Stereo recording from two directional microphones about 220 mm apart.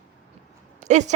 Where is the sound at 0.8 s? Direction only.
35° right (ahead or behind).